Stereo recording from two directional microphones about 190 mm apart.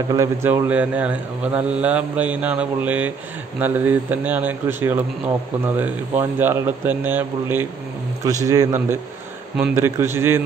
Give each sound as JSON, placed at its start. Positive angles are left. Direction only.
{"t": 0.1, "sound": "a man's voice", "side_deg": -15}